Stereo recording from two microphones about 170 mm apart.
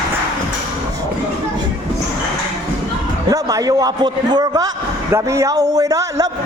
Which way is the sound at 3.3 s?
20° right (ahead or behind).